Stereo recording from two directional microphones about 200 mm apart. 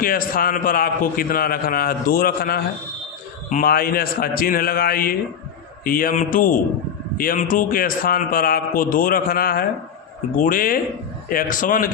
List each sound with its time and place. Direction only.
0.0 s a man's voice: 45° left (ahead or behind)